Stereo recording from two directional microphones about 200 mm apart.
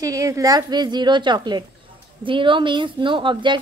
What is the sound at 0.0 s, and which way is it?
A woman's voice, 15° right (ahead or behind).